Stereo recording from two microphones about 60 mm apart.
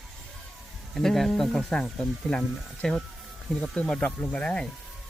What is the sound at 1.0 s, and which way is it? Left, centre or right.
Speech, centre.